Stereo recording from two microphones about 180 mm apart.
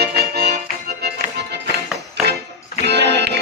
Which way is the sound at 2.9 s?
70° right (ahead or behind).